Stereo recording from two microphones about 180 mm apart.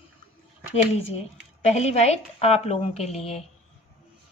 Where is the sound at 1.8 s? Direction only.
35° left (ahead or behind).